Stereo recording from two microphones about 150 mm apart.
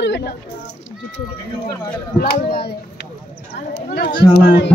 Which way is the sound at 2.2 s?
90° left.